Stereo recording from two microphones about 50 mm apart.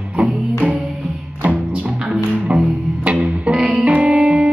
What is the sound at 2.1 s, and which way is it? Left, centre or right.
Music, right.